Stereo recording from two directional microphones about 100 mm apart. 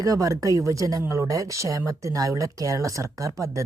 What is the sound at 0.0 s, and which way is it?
A woman's voice, 35° right (ahead or behind).